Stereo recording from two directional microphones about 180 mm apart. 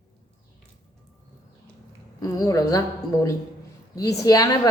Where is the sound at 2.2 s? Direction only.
20° left (ahead or behind).